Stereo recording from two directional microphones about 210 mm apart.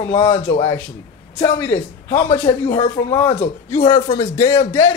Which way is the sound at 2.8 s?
15° left (ahead or behind).